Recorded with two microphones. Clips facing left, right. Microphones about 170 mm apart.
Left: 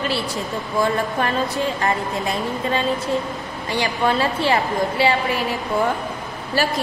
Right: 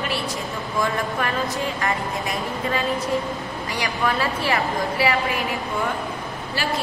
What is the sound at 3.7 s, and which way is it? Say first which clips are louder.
A woman's voice: left 4 dB; 30° left (ahead or behind).